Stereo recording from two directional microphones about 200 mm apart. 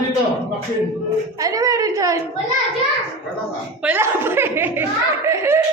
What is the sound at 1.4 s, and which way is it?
Speech, 15° right (ahead or behind).